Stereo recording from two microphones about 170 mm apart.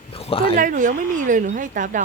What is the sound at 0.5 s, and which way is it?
Speech, 50° right (ahead or behind).